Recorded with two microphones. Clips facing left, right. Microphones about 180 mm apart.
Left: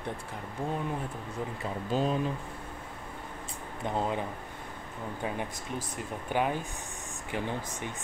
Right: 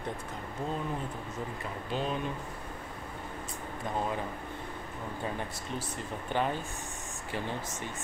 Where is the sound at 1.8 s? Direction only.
40° left (ahead or behind).